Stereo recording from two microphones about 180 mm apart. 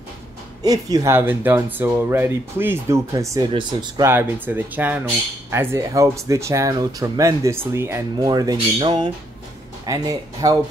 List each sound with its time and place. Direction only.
0.6 s speech: 20° right (ahead or behind)
4.1 s speech: 10° right (ahead or behind)